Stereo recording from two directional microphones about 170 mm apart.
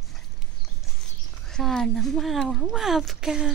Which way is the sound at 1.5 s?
5° left (ahead or behind).